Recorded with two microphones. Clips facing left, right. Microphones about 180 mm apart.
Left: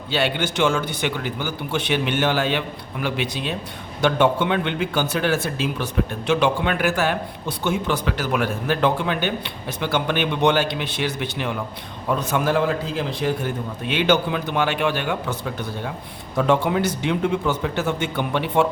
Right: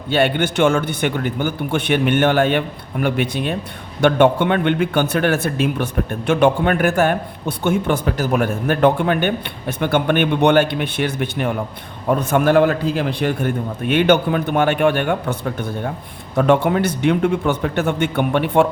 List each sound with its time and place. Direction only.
0.1 s a man's voice: 55° right (ahead or behind)